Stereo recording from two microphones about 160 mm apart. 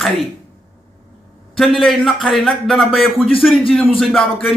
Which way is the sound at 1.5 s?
Centre (ahead or behind).